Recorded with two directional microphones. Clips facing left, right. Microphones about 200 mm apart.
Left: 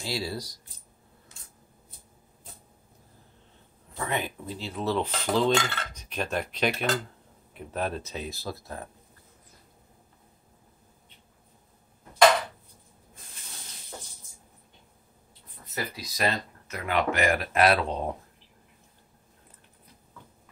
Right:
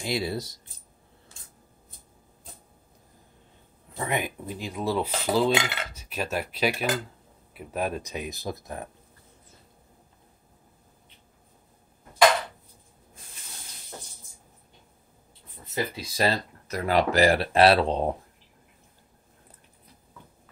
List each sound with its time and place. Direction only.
0.0 s speech: 20° right (ahead or behind)
3.9 s speech: 15° right (ahead or behind)
15.6 s speech: 25° right (ahead or behind)